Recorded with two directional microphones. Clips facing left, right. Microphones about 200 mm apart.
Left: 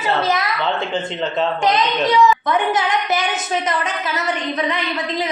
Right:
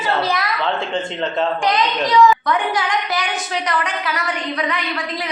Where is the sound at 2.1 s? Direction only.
20° left (ahead or behind).